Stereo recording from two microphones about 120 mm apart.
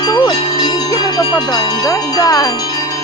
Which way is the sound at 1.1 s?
30° left (ahead or behind).